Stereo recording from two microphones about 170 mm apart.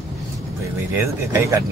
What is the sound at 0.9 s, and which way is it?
Speech, 15° right (ahead or behind).